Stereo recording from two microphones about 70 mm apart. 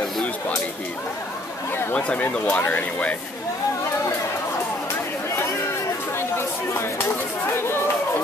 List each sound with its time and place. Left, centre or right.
2.0 s speech: centre
6.1 s speech: left